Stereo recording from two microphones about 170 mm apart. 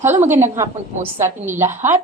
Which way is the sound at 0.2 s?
15° right (ahead or behind).